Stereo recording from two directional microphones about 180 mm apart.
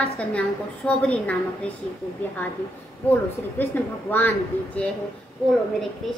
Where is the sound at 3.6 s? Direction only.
10° left (ahead or behind).